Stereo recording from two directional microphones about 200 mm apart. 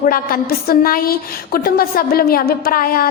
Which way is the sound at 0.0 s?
45° left (ahead or behind).